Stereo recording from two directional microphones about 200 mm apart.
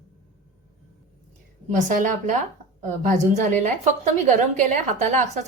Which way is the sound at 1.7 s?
40° right (ahead or behind).